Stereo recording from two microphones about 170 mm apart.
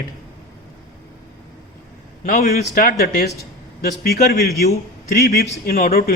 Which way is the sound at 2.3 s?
55° left (ahead or behind).